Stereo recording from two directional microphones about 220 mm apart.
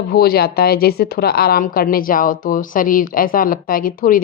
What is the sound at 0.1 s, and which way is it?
Speech, 45° left (ahead or behind).